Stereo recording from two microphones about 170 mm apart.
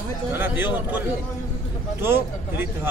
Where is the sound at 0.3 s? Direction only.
10° right (ahead or behind).